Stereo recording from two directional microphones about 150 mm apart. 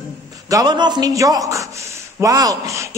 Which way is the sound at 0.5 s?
25° right (ahead or behind).